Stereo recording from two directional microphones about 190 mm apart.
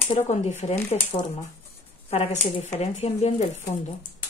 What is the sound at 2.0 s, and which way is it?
Speech, 35° left (ahead or behind).